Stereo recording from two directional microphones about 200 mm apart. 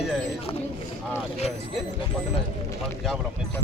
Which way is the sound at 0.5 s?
30° left (ahead or behind).